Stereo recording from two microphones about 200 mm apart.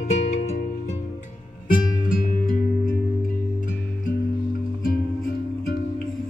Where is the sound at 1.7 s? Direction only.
45° left (ahead or behind).